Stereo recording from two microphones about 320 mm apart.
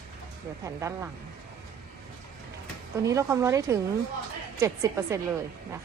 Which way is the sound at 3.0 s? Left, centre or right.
Centre.